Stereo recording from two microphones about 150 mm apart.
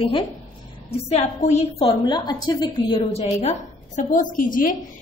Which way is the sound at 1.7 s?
35° left (ahead or behind).